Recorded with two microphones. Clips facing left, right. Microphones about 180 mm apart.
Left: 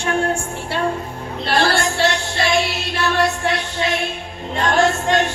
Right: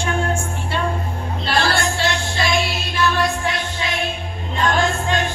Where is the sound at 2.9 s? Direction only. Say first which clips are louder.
Left 1 dB; 70° left (ahead or behind).